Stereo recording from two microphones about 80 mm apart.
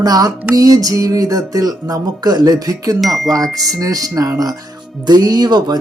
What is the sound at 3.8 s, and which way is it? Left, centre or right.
Speech, right.